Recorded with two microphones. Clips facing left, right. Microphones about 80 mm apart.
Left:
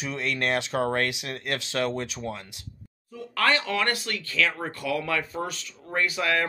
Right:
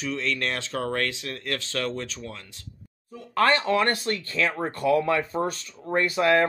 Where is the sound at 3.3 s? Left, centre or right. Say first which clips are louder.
Right 4 dB; right.